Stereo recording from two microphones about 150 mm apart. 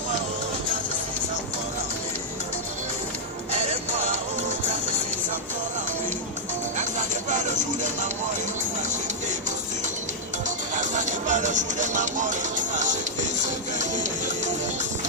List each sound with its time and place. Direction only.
7.3 s music: 55° right (ahead or behind)
10.8 s music: 55° right (ahead or behind)